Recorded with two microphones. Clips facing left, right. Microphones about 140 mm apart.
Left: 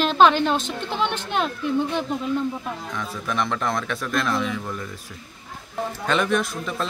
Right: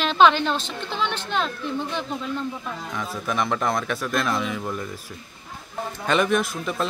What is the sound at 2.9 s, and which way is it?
A man's voice, 5° right (ahead or behind).